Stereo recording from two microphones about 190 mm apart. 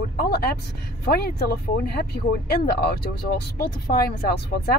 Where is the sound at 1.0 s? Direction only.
55° left (ahead or behind).